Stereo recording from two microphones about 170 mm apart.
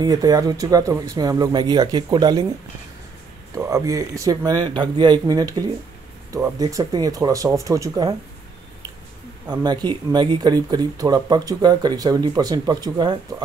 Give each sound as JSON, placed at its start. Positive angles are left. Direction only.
{"t": 0.0, "sound": "speech", "side_deg": -20}
{"t": 3.5, "sound": "speech", "side_deg": -20}
{"t": 9.5, "sound": "speech", "side_deg": -25}